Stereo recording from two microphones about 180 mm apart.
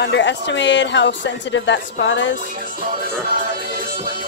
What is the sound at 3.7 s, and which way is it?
Music, 55° right (ahead or behind).